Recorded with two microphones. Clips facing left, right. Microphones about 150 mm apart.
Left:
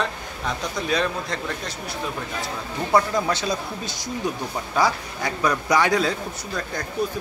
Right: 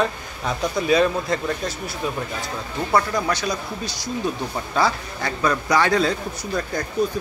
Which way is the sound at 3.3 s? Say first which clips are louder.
Even; 25° left (ahead or behind).